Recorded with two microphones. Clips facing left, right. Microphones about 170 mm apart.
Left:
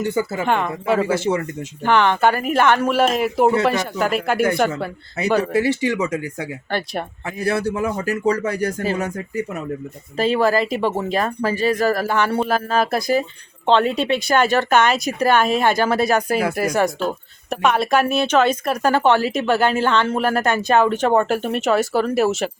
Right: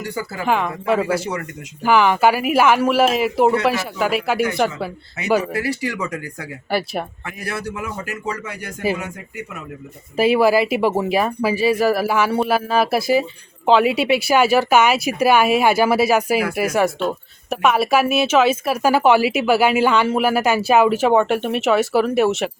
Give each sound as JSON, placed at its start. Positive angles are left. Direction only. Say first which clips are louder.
{"t": 0.0, "sound": "speech", "louder": "left 6 dB", "side_deg": 25}
{"t": 0.4, "sound": "speech", "louder": "right 5 dB", "side_deg": 0}
{"t": 1.0, "sound": "speech", "louder": "left 3 dB", "side_deg": 25}
{"t": 1.8, "sound": "speech", "louder": "right 1 dB", "side_deg": -5}
{"t": 5.5, "sound": "speech", "louder": "left 5 dB", "side_deg": 25}
{"t": 6.7, "sound": "speech", "louder": "right 4 dB", "side_deg": -5}
{"t": 7.3, "sound": "a man's voice", "louder": "left 7 dB", "side_deg": 30}
{"t": 10.2, "sound": "speech", "louder": "right 3 dB", "side_deg": -10}